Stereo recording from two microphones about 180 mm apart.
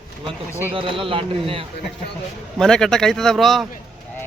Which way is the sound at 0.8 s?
30° right (ahead or behind).